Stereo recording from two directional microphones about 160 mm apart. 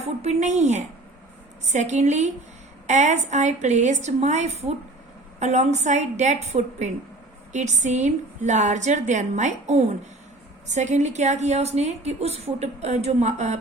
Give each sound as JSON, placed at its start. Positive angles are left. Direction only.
{"t": 0.0, "sound": "a woman's voice", "side_deg": -45}